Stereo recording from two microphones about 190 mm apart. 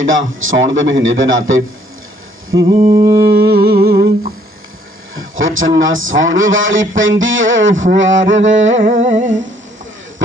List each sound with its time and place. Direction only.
0.0 s a man's voice: 90° right
2.6 s mantra: 20° right (ahead or behind)
3.3 s humming: 55° right (ahead or behind)
5.1 s a man's voice: 90° right
7.9 s mantra: 80° right
8.8 s humming: 40° right (ahead or behind)